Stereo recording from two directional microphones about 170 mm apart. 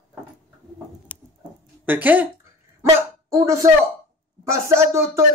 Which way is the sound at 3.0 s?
15° right (ahead or behind).